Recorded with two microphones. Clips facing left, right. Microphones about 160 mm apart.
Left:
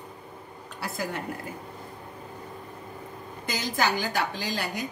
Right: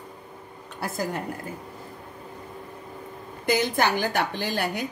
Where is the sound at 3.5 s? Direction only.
60° right (ahead or behind).